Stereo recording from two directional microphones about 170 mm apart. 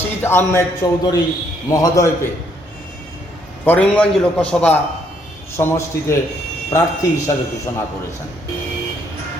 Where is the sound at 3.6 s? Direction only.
10° left (ahead or behind).